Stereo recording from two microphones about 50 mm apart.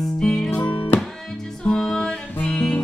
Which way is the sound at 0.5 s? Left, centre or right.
Left.